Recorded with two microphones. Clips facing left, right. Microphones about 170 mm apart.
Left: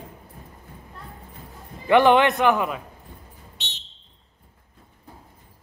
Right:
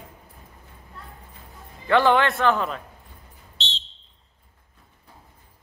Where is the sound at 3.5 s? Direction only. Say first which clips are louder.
Right 8 dB; 15° left (ahead or behind).